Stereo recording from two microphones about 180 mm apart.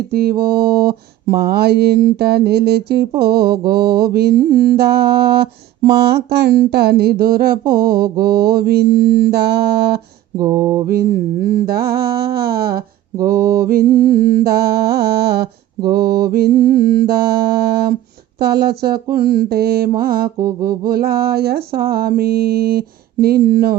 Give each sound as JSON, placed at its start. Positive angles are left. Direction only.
{"t": 0.1, "sound": "mantra", "side_deg": -60}
{"t": 10.3, "sound": "mantra", "side_deg": -15}
{"t": 10.8, "sound": "mantra", "side_deg": -55}